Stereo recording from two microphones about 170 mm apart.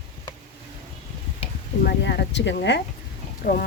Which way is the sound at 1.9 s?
85° left.